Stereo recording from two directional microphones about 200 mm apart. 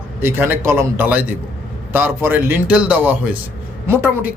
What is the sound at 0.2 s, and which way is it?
A man's voice, 10° right (ahead or behind).